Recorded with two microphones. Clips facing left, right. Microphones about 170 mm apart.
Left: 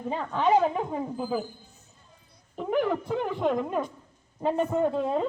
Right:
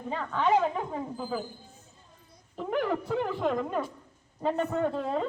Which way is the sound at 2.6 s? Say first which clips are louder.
Left 3 dB; 5° left (ahead or behind).